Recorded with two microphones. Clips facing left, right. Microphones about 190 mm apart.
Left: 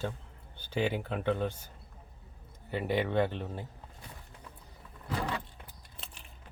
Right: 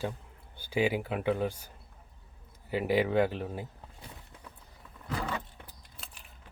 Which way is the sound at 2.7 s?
10° right (ahead or behind).